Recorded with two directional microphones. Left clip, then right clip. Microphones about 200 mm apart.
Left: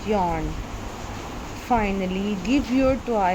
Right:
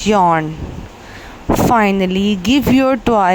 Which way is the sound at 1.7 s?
45° right (ahead or behind).